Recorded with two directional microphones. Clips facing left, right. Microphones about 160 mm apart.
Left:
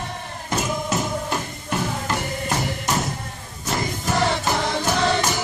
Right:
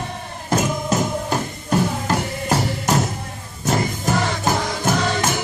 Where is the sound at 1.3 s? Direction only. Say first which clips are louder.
Right 5 dB; 40° right (ahead or behind).